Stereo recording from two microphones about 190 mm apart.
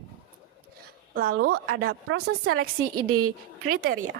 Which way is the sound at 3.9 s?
90° right.